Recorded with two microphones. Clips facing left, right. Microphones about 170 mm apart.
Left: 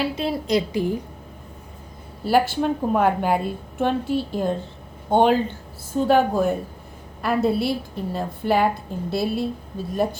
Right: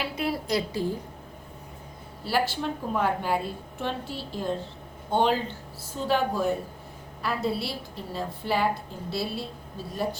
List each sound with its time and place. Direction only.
0.0 s a woman's voice: 25° left (ahead or behind)
2.2 s a woman's voice: 50° left (ahead or behind)